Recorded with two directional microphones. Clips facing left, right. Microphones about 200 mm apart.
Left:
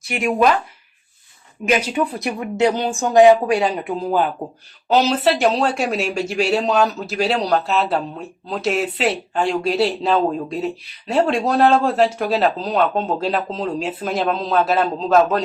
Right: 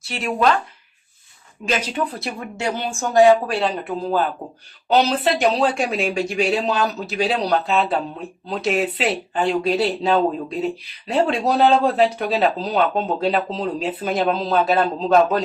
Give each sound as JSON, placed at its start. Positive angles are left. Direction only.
{"t": 0.1, "sound": "speech", "side_deg": 15}
{"t": 1.6, "sound": "speech", "side_deg": 10}
{"t": 4.9, "sound": "speech", "side_deg": 0}